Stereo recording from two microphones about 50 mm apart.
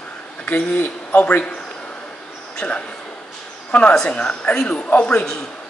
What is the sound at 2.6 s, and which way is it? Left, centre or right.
Speech, left.